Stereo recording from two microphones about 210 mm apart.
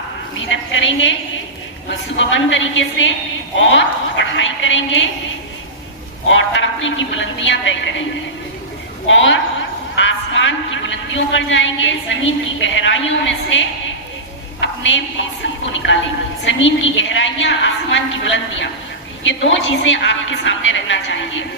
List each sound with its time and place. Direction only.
0.3 s a woman's voice: 65° left (ahead or behind)
6.2 s a woman's voice: 60° left (ahead or behind)
9.0 s a woman's voice: 65° left (ahead or behind)